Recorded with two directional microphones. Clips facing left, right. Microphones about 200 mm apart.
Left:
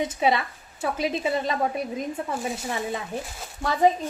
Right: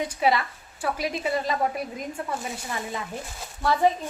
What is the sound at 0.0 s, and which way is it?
A woman's voice, 20° left (ahead or behind).